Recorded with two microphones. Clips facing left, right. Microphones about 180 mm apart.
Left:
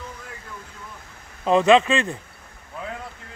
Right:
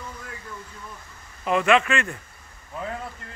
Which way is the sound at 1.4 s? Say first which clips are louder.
Left 4 dB; 25° left (ahead or behind).